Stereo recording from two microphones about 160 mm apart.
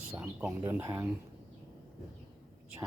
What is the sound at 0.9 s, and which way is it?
Speech, 15° right (ahead or behind).